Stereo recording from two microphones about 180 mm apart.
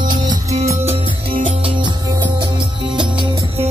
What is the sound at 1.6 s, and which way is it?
Music, 25° right (ahead or behind).